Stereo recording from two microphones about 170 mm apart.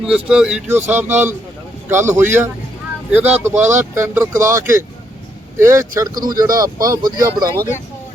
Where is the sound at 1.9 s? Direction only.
15° right (ahead or behind).